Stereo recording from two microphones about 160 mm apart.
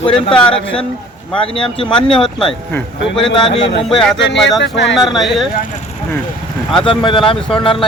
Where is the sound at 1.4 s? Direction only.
35° left (ahead or behind).